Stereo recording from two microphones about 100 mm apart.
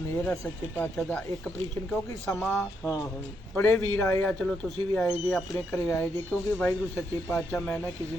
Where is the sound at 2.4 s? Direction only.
10° left (ahead or behind).